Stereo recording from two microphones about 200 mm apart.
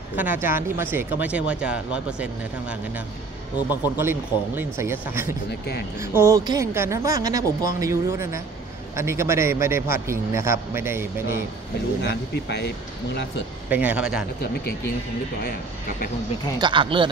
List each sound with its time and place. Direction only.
0.1 s a woman's voice: 10° right (ahead or behind)
3.8 s a woman's voice: 10° right (ahead or behind)
12.0 s speech: 55° left (ahead or behind)
13.7 s speech: 10° right (ahead or behind)
14.4 s speech: 55° left (ahead or behind)
16.5 s speech: 25° right (ahead or behind)